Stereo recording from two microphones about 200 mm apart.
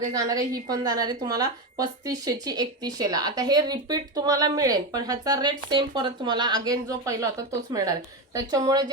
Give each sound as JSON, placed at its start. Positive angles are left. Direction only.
{"t": 0.1, "sound": "a woman's voice", "side_deg": -20}